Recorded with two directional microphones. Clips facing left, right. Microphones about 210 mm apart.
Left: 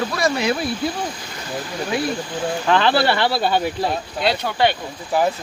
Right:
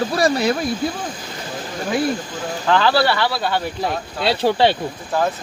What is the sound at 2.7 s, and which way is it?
Speech, 20° left (ahead or behind).